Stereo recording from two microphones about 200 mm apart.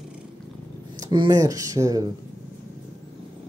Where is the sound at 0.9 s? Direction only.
20° right (ahead or behind).